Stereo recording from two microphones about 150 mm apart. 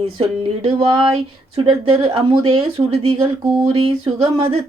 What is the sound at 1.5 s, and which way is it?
Speech, 40° right (ahead or behind).